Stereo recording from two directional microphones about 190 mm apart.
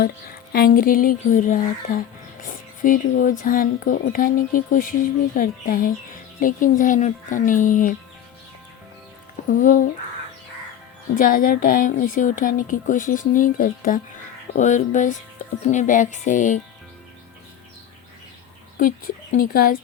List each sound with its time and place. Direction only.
0.5 s a woman's voice: 50° left (ahead or behind)
9.6 s a woman's voice: 45° left (ahead or behind)
11.1 s a woman's voice: 45° left (ahead or behind)
18.8 s a woman's voice: 45° left (ahead or behind)